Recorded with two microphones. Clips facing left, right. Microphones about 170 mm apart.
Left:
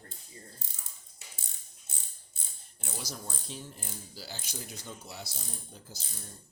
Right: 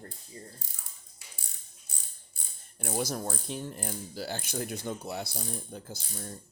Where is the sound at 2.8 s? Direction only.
55° right (ahead or behind).